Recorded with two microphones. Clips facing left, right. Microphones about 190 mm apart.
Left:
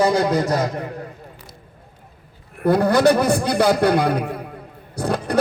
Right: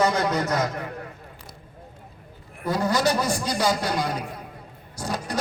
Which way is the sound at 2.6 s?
60° left (ahead or behind).